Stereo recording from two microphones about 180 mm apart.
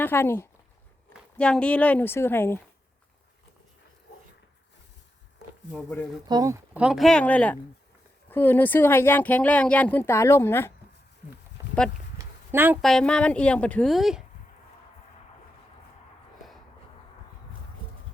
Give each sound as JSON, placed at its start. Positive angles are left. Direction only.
{"t": 0.0, "sound": "speech", "side_deg": 10}
{"t": 5.7, "sound": "speech", "side_deg": 10}
{"t": 6.2, "sound": "speech", "side_deg": -20}
{"t": 6.7, "sound": "a woman's voice", "side_deg": -5}
{"t": 11.6, "sound": "a sound", "side_deg": -20}
{"t": 12.8, "sound": "a woman's voice", "side_deg": 5}